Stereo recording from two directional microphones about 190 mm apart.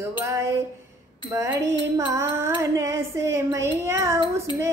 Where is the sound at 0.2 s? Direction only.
15° right (ahead or behind).